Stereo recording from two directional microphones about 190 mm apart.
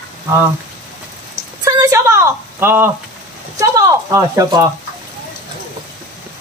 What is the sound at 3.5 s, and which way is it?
Speech, 15° right (ahead or behind).